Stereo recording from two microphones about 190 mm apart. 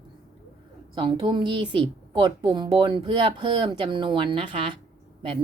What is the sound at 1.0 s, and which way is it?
A woman's voice, 25° right (ahead or behind).